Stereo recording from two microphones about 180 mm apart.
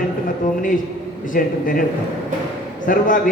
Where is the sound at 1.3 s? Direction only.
50° left (ahead or behind).